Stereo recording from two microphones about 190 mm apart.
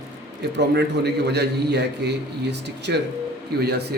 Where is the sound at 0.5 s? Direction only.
60° right (ahead or behind).